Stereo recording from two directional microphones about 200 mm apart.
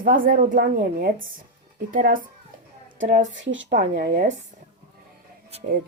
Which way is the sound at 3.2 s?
70° right (ahead or behind).